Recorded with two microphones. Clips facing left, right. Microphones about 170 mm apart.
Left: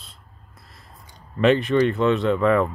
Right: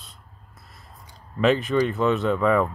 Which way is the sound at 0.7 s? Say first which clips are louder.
Even; centre (ahead or behind).